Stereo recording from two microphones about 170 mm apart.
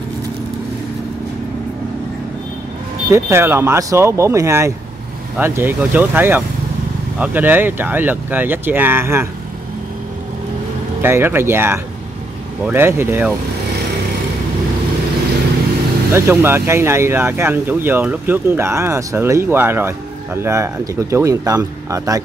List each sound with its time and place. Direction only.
3.1 s speech: 15° right (ahead or behind)
11.0 s speech: 15° right (ahead or behind)
16.1 s speech: 15° right (ahead or behind)